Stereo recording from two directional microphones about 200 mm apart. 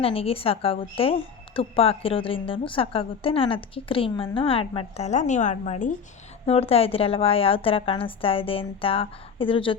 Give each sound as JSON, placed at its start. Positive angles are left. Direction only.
{"t": 0.0, "sound": "a woman's voice", "side_deg": 30}